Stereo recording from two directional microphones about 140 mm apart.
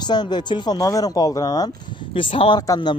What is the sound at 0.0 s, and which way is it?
Speech, 30° left (ahead or behind).